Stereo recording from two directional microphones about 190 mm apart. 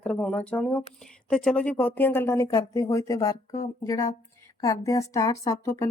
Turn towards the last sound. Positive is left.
turn(degrees=15)  # may be behind; listen again after turning